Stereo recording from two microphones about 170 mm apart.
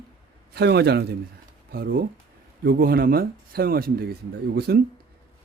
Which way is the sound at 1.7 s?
60° right (ahead or behind).